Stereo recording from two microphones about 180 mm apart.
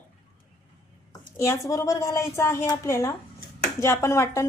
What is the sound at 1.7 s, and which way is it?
A woman's voice, 15° left (ahead or behind).